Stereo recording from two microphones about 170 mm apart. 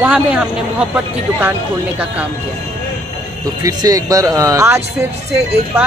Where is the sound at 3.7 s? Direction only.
20° right (ahead or behind).